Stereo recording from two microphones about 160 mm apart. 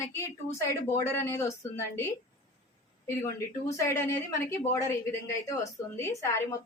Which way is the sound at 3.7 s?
20° left (ahead or behind).